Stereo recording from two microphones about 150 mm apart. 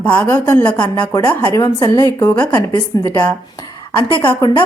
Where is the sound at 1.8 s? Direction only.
25° left (ahead or behind).